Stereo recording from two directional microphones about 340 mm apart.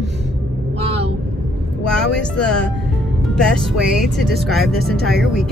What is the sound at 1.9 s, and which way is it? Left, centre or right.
Speech, centre.